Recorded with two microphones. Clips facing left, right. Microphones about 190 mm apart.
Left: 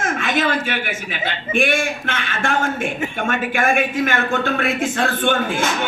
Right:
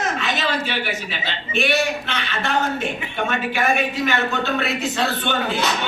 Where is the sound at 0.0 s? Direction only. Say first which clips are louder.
Left 3 dB; 50° left (ahead or behind).